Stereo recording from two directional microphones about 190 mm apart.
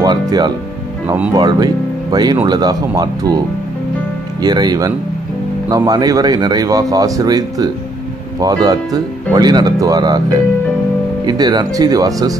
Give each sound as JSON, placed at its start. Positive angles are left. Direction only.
{"t": 0.0, "sound": "speech", "side_deg": -20}
{"t": 4.4, "sound": "speech", "side_deg": -20}